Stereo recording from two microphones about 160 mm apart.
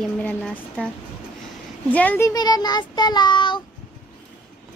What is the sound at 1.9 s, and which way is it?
Speech, 10° left (ahead or behind).